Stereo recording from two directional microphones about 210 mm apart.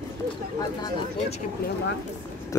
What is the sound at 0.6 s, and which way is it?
Speech, 20° left (ahead or behind).